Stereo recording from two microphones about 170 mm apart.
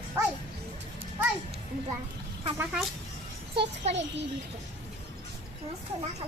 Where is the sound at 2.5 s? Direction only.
5° right (ahead or behind).